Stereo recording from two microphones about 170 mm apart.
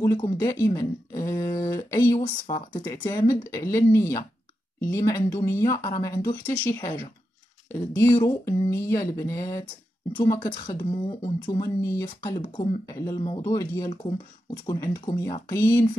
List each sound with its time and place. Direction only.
0.0 s speech: 25° left (ahead or behind)
8.2 s speech: 20° left (ahead or behind)